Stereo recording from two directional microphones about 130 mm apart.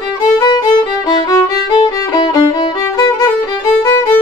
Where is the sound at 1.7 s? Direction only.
35° left (ahead or behind).